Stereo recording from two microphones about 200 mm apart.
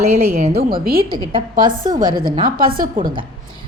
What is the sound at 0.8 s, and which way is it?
Speech, 50° right (ahead or behind).